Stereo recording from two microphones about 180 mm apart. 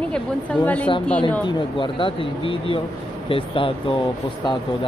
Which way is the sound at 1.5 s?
25° left (ahead or behind).